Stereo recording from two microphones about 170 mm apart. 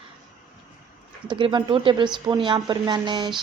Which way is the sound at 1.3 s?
30° right (ahead or behind).